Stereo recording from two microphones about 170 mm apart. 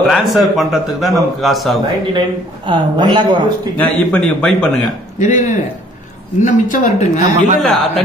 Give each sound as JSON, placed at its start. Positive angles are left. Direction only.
{"t": 0.0, "sound": "a man's voice", "side_deg": 0}
{"t": 2.1, "sound": "speech", "side_deg": -25}
{"t": 3.7, "sound": "a man's voice", "side_deg": 10}
{"t": 5.2, "sound": "speech", "side_deg": 45}
{"t": 7.6, "sound": "a man's voice", "side_deg": 0}